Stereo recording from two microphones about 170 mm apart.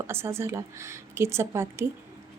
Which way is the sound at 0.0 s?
15° right (ahead or behind).